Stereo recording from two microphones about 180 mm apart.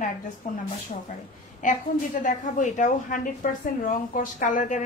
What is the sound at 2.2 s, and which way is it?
A woman's voice, 45° left (ahead or behind).